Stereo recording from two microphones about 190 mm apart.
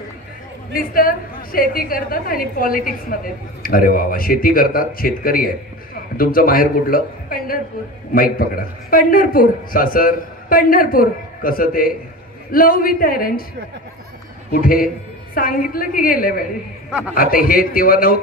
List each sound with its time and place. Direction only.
0.7 s a man's voice: 50° left (ahead or behind)
14.5 s a man's voice: 50° left (ahead or behind)